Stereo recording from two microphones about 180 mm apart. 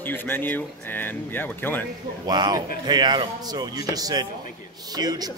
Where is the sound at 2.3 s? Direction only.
20° right (ahead or behind).